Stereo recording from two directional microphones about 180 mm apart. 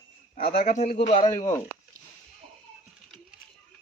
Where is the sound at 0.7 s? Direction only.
40° left (ahead or behind).